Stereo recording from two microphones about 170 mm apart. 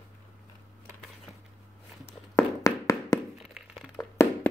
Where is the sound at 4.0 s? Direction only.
15° left (ahead or behind).